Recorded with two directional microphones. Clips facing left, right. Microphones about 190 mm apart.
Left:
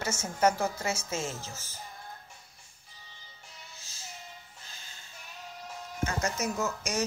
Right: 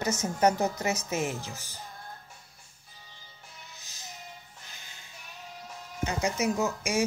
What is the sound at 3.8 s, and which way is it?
Music, 15° right (ahead or behind).